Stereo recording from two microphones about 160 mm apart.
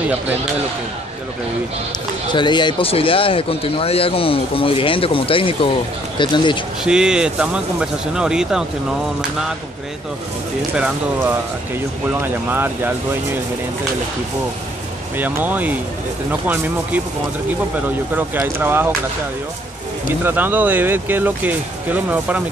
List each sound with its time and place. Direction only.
2.3 s speech: 30° left (ahead or behind)
6.8 s speech: 5° right (ahead or behind)
12.2 s speech: 15° right (ahead or behind)
15.1 s speech: 10° right (ahead or behind)
18.1 s speech: 10° right (ahead or behind)
20.2 s speech: 10° right (ahead or behind)